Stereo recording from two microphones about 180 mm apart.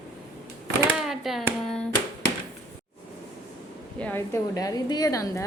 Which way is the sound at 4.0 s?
10° left (ahead or behind).